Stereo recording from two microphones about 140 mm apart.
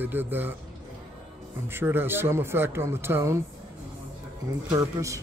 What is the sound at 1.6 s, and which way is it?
Speech, 15° right (ahead or behind).